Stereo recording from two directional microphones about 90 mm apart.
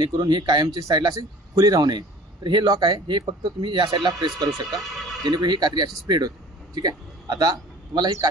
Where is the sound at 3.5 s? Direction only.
65° right (ahead or behind).